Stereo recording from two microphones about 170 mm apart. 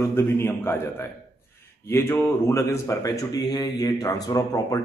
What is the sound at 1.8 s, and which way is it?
Speech, 15° left (ahead or behind).